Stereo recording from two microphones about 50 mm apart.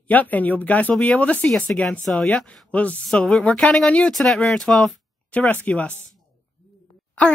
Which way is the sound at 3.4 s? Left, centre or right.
Left.